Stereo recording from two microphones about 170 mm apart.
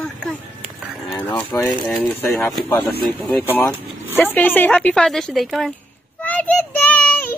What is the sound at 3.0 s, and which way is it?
A child's voice, 5° left (ahead or behind).